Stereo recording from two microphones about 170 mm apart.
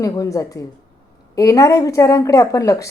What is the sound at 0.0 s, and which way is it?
A woman's voice, 20° left (ahead or behind).